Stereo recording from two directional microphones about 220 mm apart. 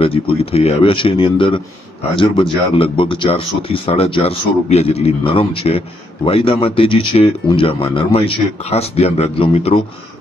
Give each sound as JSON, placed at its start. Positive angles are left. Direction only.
{"t": 0.0, "sound": "speech", "side_deg": 25}